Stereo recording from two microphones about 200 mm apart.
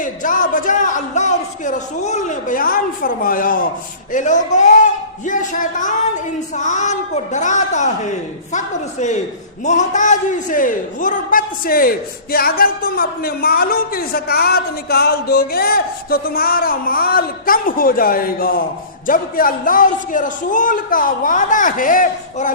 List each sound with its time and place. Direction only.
0.0 s a man's voice: 40° left (ahead or behind)